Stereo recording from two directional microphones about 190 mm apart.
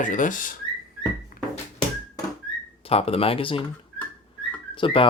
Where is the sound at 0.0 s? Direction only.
40° left (ahead or behind).